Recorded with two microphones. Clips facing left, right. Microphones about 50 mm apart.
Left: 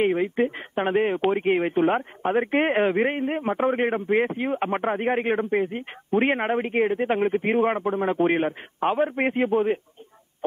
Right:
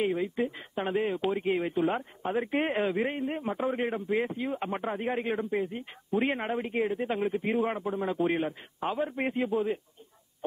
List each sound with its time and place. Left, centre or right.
0.0 s speech: left